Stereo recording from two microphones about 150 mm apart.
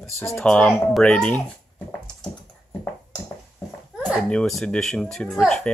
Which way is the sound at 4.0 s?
5° left (ahead or behind).